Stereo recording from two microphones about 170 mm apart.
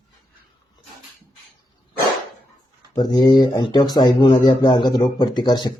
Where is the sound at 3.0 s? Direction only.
25° left (ahead or behind).